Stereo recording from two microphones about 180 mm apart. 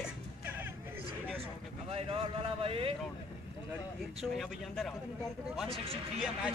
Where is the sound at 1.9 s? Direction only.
35° right (ahead or behind).